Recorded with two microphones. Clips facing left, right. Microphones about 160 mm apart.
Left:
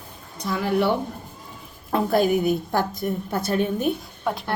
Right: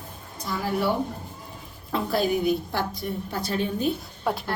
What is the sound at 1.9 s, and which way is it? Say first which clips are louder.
A woman's voice: left 4 dB; 50° left (ahead or behind).